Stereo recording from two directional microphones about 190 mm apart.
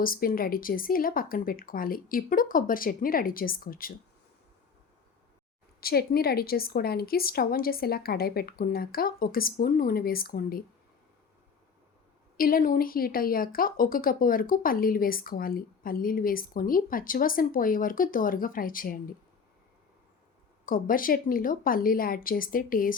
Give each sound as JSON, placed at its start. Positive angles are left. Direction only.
{"t": 0.0, "sound": "speech", "side_deg": 50}
{"t": 5.8, "sound": "speech", "side_deg": 50}
{"t": 12.4, "sound": "speech", "side_deg": 50}
{"t": 20.7, "sound": "speech", "side_deg": 45}